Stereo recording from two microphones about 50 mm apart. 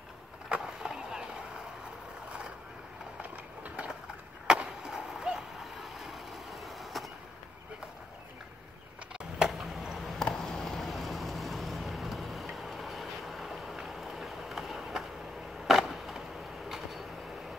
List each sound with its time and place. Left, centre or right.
0.6 s skateboard: centre
3.2 s train: right
4.8 s vehicle: centre
9.4 s a sound: centre
15.6 s skateboard: centre
16.6 s vehicle: centre